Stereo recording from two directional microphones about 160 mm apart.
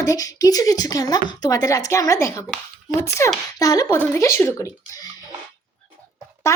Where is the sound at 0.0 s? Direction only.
20° left (ahead or behind).